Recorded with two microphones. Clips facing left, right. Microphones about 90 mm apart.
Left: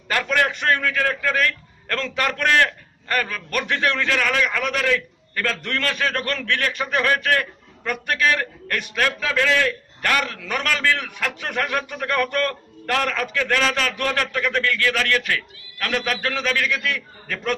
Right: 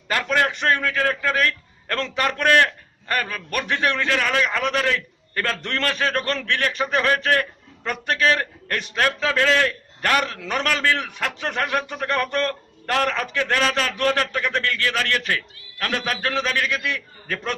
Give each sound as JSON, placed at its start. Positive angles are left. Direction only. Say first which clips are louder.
{"t": 0.1, "sound": "a man's voice", "louder": "even", "side_deg": -25}